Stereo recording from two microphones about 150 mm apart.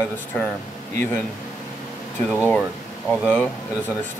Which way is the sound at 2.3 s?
10° left (ahead or behind).